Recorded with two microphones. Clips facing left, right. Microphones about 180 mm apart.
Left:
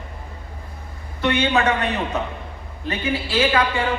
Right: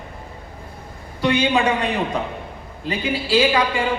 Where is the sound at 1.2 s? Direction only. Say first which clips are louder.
Right 1 dB; 15° right (ahead or behind).